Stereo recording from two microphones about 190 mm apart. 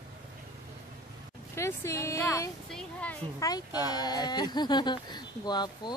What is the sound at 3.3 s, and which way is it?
Speech, 20° left (ahead or behind).